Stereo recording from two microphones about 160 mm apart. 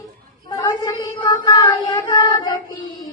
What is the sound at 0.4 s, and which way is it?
Child singing, 25° left (ahead or behind).